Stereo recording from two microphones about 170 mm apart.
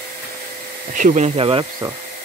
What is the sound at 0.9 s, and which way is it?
Speech, 50° right (ahead or behind).